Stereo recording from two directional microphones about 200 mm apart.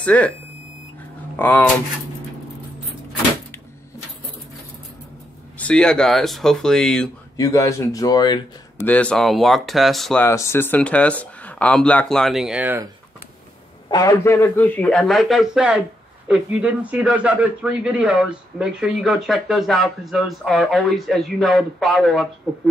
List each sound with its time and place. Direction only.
0.0 s speech: 5° left (ahead or behind)
1.3 s speech: 10° left (ahead or behind)
5.6 s a man's voice: 5° left (ahead or behind)
7.3 s speech: 15° left (ahead or behind)
8.8 s a man's voice: 5° left (ahead or behind)
10.2 s speech: 15° left (ahead or behind); by 12.8 s 5° right (ahead or behind)
13.8 s a man's voice: 20° left (ahead or behind); by 22.3 s centre (ahead or behind)